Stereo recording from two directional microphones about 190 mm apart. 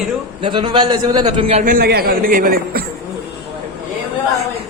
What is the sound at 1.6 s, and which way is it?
A man's voice, 50° right (ahead or behind).